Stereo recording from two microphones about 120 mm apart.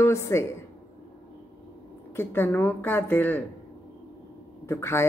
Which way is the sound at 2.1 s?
20° left (ahead or behind).